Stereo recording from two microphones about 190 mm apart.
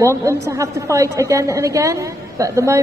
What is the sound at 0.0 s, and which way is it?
A woman's voice, 15° right (ahead or behind).